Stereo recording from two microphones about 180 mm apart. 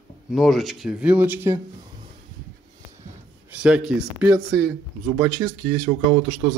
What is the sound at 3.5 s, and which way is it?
Speech, 5° right (ahead or behind).